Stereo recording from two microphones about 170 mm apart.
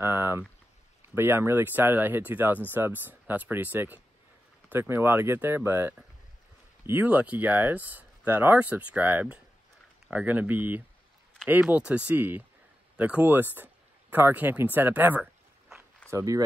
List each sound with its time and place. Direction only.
0.0 s speech: 15° right (ahead or behind)